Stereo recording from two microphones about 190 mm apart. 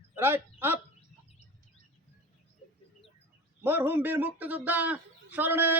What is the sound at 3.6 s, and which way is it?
Speech, 10° right (ahead or behind).